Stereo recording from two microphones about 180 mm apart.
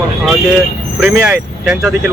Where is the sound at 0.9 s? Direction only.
5° right (ahead or behind).